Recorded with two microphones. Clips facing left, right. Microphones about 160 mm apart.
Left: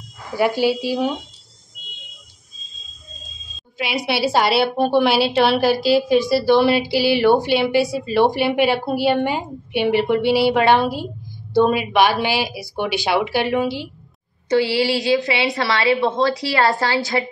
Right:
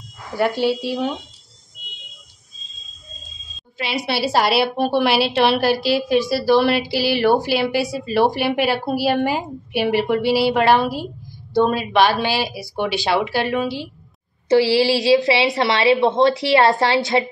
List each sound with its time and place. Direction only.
0.3 s a woman's voice: centre (ahead or behind)
3.9 s a woman's voice: centre (ahead or behind)
11.8 s speech: 10° left (ahead or behind)
14.5 s a woman's voice: 30° right (ahead or behind)